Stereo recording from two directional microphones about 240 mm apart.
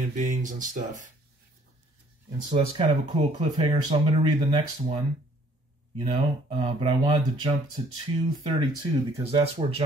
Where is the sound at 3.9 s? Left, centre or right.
Centre.